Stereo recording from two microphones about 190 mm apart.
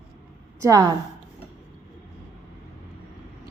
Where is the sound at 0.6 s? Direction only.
15° right (ahead or behind).